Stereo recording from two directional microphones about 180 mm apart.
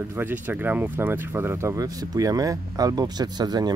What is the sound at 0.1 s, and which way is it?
Speech, 10° right (ahead or behind).